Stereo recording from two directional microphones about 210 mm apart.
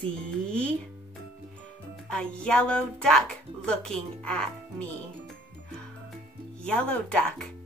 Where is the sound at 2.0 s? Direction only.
5° left (ahead or behind).